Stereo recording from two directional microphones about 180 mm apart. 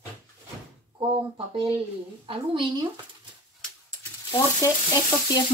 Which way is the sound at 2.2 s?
25° right (ahead or behind).